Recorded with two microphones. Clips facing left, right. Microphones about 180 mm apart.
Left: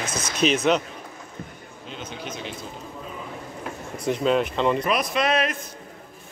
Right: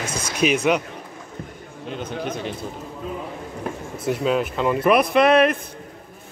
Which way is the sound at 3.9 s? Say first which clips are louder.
Even; 5° right (ahead or behind).